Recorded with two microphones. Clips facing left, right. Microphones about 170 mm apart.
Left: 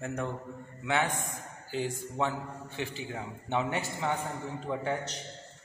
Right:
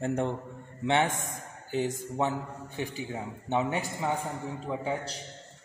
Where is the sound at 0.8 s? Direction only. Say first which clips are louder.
Right 3 dB; 25° right (ahead or behind).